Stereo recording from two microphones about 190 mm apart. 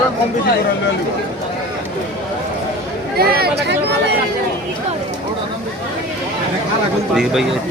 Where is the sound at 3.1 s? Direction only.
55° right (ahead or behind).